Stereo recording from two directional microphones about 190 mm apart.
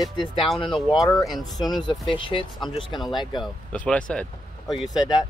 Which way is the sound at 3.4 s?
5° left (ahead or behind).